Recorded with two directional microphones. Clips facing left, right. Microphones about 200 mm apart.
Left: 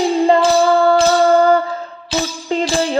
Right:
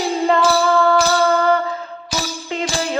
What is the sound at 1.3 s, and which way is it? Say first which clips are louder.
Music: left 5 dB; 35° left (ahead or behind).